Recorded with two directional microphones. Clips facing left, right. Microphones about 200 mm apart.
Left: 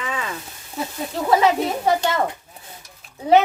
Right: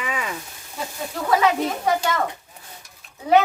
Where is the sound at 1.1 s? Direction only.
25° left (ahead or behind).